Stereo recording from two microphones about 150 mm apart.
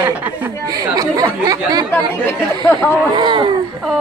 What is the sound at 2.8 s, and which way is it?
Speech, 15° left (ahead or behind).